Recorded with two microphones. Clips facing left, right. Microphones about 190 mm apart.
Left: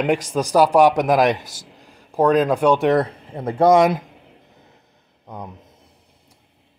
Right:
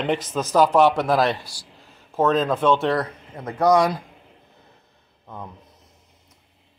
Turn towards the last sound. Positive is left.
turn(degrees=15)  # may be behind; listen again after turning